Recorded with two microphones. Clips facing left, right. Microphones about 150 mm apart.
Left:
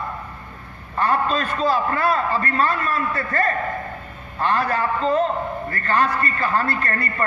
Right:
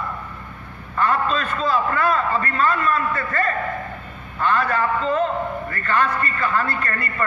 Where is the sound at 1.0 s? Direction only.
35° left (ahead or behind).